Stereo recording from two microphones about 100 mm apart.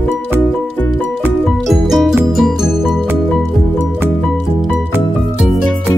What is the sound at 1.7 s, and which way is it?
Music, 5° right (ahead or behind).